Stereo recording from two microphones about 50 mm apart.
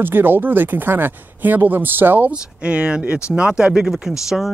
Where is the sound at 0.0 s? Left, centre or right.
Right.